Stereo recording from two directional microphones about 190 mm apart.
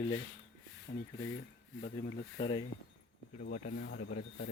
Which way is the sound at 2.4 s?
25° left (ahead or behind).